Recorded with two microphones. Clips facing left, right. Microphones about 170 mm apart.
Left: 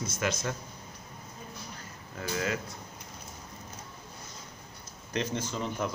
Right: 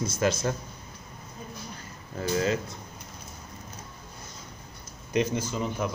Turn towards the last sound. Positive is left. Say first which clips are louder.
# right 3 dB
turn(degrees=-10)  # may be behind; listen again after turning